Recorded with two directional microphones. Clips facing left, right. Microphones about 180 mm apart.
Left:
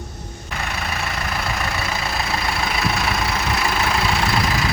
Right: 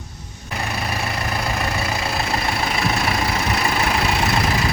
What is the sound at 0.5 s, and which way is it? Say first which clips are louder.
Vehicle: right 2 dB; 35° right (ahead or behind).